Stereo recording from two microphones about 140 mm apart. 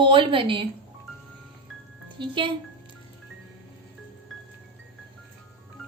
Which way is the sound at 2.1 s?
35° right (ahead or behind).